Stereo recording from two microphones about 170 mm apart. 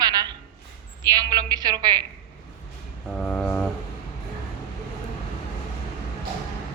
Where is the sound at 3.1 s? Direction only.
5° left (ahead or behind).